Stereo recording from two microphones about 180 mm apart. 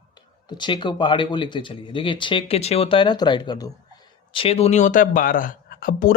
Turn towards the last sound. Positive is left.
turn(degrees=50)  # may be behind; listen again after turning